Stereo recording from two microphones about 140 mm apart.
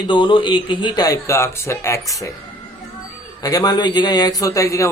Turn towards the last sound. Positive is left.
turn(degrees=25)  # may be behind; listen again after turning